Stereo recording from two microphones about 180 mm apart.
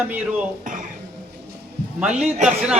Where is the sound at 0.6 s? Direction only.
45° right (ahead or behind).